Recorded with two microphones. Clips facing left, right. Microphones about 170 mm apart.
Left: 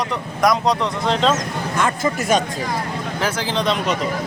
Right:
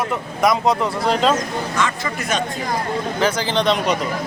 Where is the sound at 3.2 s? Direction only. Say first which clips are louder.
Right 2 dB; centre (ahead or behind).